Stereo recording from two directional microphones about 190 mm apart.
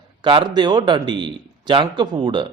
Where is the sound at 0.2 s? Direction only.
25° right (ahead or behind).